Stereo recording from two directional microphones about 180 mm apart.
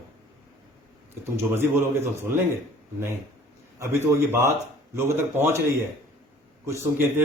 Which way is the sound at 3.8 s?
15° right (ahead or behind).